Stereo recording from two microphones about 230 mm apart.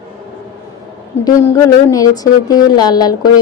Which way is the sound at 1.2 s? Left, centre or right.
Centre.